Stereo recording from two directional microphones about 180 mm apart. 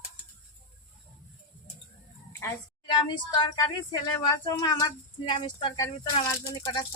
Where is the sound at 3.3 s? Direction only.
25° left (ahead or behind).